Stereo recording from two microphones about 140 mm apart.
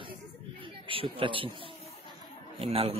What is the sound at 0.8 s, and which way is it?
A man's voice, 40° right (ahead or behind).